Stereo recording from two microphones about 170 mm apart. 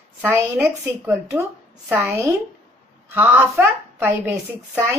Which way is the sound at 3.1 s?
10° right (ahead or behind).